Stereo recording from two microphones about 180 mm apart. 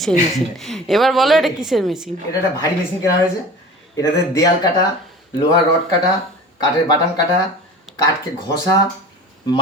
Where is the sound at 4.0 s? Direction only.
20° left (ahead or behind).